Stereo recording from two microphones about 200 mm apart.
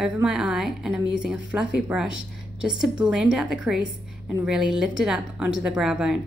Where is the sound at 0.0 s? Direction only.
5° right (ahead or behind).